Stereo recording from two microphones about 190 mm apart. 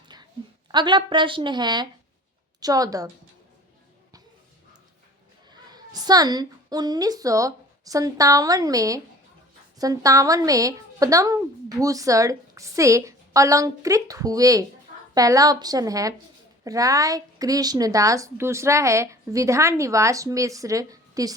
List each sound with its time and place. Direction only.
0.1 s a sound: 20° right (ahead or behind)
0.7 s a woman's voice: 25° right (ahead or behind)
5.5 s a woman's voice: 20° right (ahead or behind)